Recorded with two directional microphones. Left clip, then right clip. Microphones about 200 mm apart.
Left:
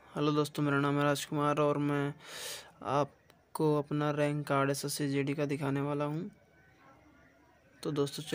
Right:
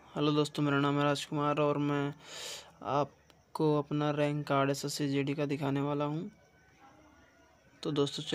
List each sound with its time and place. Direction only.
0.0 s speech: centre (ahead or behind)
7.8 s speech: centre (ahead or behind)